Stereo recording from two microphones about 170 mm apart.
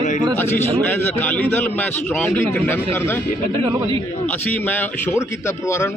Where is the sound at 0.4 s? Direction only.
15° left (ahead or behind).